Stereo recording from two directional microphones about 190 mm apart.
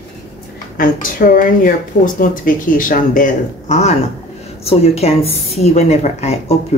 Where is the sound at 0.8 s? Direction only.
45° left (ahead or behind).